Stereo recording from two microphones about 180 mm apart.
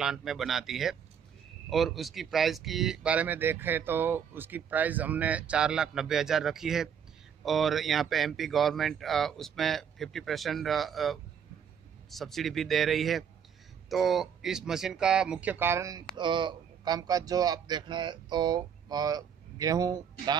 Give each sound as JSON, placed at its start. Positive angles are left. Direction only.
{"t": 0.0, "sound": "speech", "side_deg": 0}